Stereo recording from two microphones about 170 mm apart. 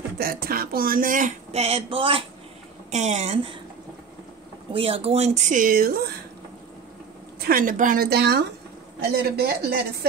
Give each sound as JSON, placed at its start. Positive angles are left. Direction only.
{"t": 0.2, "sound": "speech", "side_deg": -60}
{"t": 4.7, "sound": "speech", "side_deg": -35}
{"t": 7.3, "sound": "a woman's voice", "side_deg": -60}